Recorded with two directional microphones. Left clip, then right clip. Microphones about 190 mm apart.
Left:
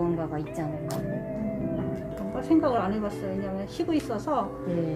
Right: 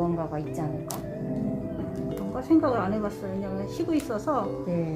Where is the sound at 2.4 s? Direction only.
5° left (ahead or behind).